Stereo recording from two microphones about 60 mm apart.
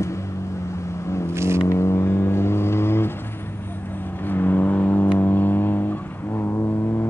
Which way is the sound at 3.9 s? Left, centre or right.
Left.